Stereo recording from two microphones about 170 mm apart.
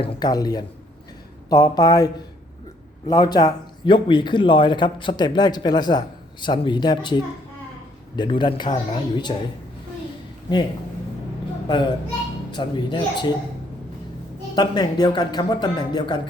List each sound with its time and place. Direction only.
0.0 s a man's voice: 25° left (ahead or behind)
3.1 s a man's voice: 25° left (ahead or behind)
12.5 s a man's voice: 25° left (ahead or behind)
14.5 s a man's voice: 25° left (ahead or behind)